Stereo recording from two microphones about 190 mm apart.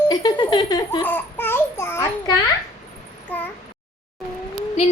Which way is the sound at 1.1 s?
10° left (ahead or behind).